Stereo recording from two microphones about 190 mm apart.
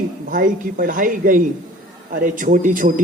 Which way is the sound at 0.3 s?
45° right (ahead or behind).